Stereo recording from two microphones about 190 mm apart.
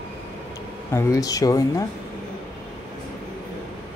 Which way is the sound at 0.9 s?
15° left (ahead or behind).